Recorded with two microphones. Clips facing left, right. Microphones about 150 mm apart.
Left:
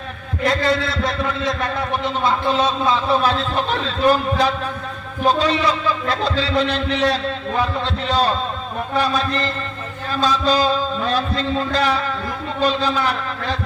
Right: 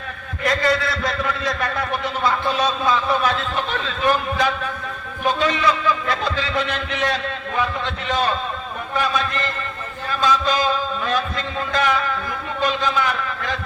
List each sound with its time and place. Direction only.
0.4 s a man's voice: 25° left (ahead or behind)